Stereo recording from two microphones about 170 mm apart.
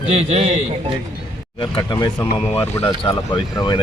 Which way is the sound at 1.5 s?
30° left (ahead or behind).